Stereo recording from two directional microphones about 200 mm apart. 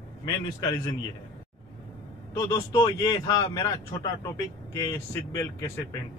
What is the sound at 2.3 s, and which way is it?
A man's voice, 15° left (ahead or behind).